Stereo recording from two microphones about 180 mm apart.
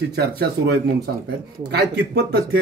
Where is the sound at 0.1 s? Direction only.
60° right (ahead or behind).